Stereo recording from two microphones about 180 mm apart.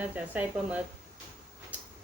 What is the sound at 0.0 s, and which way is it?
Speech, 10° right (ahead or behind).